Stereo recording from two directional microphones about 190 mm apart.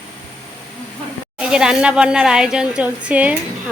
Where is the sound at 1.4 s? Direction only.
5° right (ahead or behind).